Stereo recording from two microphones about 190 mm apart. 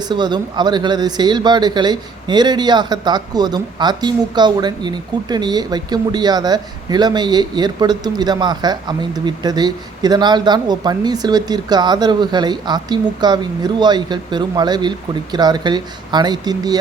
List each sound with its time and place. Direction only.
0.0 s speech: 25° right (ahead or behind)